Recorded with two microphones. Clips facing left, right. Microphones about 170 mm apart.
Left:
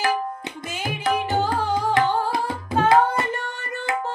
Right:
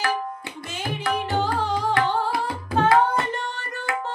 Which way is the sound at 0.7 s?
10° left (ahead or behind).